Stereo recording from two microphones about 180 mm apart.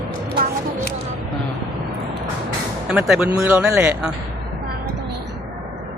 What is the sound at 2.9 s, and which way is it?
Speech, 5° right (ahead or behind).